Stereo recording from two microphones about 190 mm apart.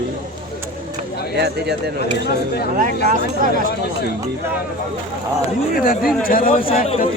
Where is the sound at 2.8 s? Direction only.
40° right (ahead or behind).